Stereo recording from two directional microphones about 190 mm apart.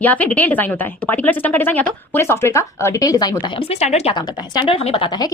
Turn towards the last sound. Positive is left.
turn(degrees=25)  # may be behind; listen again after turning